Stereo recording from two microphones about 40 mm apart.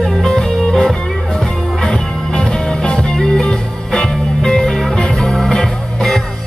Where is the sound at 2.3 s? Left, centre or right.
Left.